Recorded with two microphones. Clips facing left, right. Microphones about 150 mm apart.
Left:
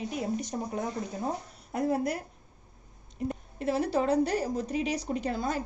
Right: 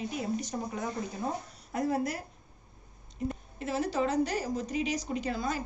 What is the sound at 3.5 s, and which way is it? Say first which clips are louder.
A woman's voice: left 3 dB; 55° left (ahead or behind).